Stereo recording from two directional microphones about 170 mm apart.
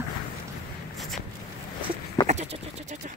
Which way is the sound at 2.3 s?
40° right (ahead or behind).